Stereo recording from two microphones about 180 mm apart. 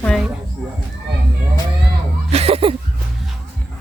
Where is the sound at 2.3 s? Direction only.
35° right (ahead or behind).